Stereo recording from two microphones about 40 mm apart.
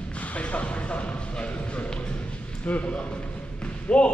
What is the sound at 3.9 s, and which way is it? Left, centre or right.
Basketball bounce, left.